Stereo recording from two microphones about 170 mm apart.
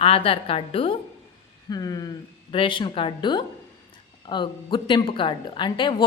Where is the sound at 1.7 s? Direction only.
20° left (ahead or behind).